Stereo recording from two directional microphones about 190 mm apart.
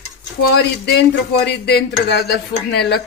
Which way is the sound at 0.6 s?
60° left (ahead or behind).